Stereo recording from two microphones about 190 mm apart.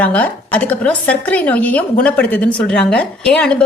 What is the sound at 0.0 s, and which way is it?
A woman's voice, 5° left (ahead or behind).